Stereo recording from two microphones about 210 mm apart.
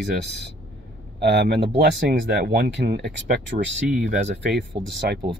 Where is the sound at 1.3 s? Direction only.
50° right (ahead or behind).